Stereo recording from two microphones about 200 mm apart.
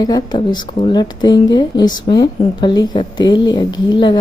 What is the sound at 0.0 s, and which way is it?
A woman's voice, 20° left (ahead or behind).